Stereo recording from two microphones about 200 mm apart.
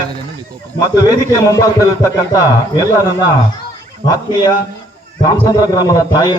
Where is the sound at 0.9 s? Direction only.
20° left (ahead or behind).